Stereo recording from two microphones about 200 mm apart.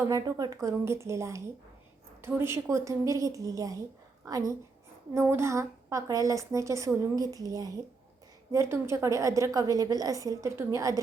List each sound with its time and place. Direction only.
0.1 s a woman's voice: 20° right (ahead or behind)